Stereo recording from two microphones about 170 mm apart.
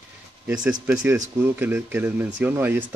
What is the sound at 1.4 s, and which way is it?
Speech, 10° right (ahead or behind).